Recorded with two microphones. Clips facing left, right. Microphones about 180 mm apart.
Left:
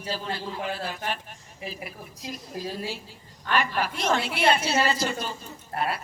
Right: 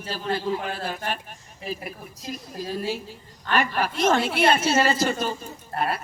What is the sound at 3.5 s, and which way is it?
A woman's voice, 50° right (ahead or behind).